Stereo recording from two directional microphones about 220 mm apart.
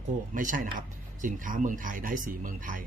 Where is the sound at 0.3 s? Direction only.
35° right (ahead or behind).